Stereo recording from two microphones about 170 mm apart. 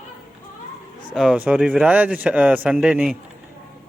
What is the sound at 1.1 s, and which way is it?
Speech, 5° right (ahead or behind).